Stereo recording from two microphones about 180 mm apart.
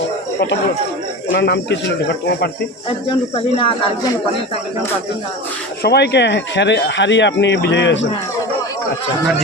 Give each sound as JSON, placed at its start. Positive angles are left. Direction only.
{"t": 1.3, "sound": "speech", "side_deg": 65}
{"t": 3.1, "sound": "speech", "side_deg": 30}
{"t": 5.8, "sound": "speech", "side_deg": 70}